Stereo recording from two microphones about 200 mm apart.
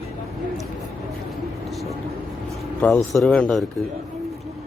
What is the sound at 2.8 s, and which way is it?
Speech, 5° left (ahead or behind).